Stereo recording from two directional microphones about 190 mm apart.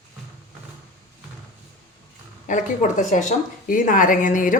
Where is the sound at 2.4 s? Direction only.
40° left (ahead or behind).